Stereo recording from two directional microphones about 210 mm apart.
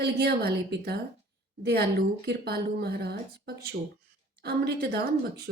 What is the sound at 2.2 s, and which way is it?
A woman's voice, 50° right (ahead or behind).